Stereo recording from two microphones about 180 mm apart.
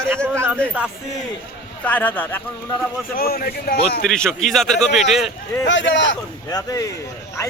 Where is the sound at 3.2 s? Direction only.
55° left (ahead or behind).